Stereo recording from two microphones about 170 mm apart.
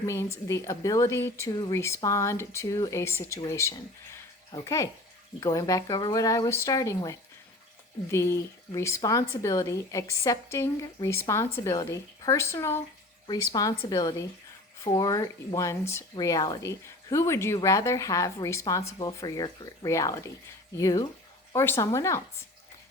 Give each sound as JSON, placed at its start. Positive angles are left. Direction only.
{"t": 0.0, "sound": "a woman's voice", "side_deg": 15}